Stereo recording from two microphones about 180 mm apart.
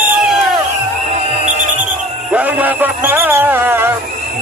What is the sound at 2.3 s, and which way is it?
Music, 10° right (ahead or behind).